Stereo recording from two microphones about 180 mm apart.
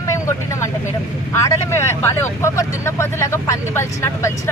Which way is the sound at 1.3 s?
15° left (ahead or behind).